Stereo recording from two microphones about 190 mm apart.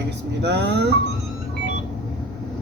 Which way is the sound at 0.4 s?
60° right (ahead or behind).